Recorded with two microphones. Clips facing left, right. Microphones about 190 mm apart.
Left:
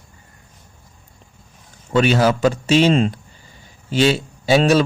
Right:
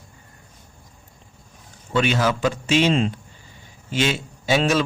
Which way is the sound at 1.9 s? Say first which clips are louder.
Left 5 dB; 40° left (ahead or behind).